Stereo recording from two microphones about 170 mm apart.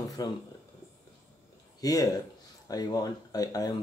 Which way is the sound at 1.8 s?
20° left (ahead or behind).